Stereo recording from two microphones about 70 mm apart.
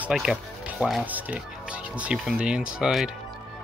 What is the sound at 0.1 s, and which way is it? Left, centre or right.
Speech, centre.